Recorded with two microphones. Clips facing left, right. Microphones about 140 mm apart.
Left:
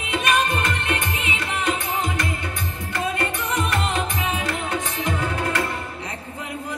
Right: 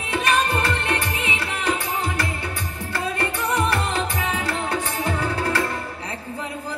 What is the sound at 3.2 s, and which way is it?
Music, 30° right (ahead or behind).